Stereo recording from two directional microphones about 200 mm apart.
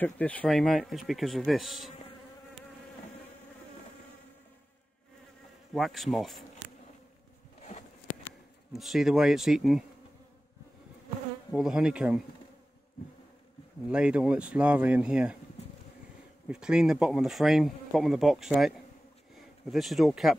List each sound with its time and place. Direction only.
0.0 s speech: 5° left (ahead or behind)
5.7 s speech: centre (ahead or behind)
7.6 s a sound: 35° left (ahead or behind)
8.7 s speech: centre (ahead or behind)
11.5 s speech: 5° right (ahead or behind)
13.8 s speech: 5° right (ahead or behind)
16.4 s speech: 5° right (ahead or behind)